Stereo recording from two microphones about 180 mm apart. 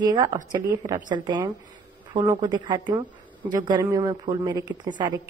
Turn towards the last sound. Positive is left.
turn(degrees=-25)  # may be behind; listen again after turning